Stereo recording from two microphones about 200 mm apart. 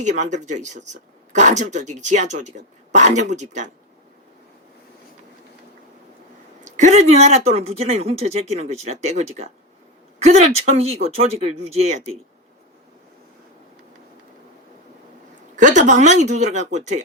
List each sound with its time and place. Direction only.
0.0 s speech: 35° right (ahead or behind)
6.7 s speech: 35° right (ahead or behind)
15.5 s speech: 40° right (ahead or behind)